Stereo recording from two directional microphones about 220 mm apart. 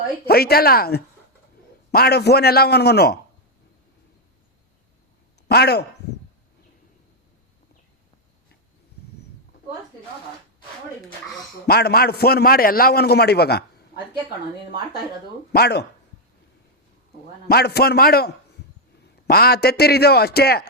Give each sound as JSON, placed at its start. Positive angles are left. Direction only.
{"t": 0.3, "sound": "a man's voice", "side_deg": 45}
{"t": 5.5, "sound": "speech", "side_deg": 45}
{"t": 11.6, "sound": "a man's voice", "side_deg": 45}
{"t": 15.5, "sound": "a man's voice", "side_deg": 45}
{"t": 17.5, "sound": "a man's voice", "side_deg": 45}
{"t": 19.3, "sound": "a man's voice", "side_deg": 45}